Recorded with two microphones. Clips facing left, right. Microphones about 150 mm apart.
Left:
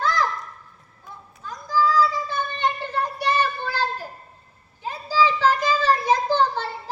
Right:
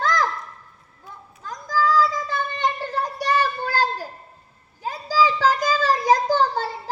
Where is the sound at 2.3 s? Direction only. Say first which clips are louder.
Right 1 dB; 40° right (ahead or behind).